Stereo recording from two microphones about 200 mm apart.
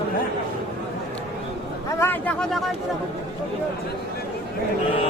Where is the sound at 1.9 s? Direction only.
10° left (ahead or behind).